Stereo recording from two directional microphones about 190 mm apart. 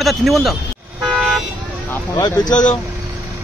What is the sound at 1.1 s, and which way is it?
Vehicle, centre (ahead or behind).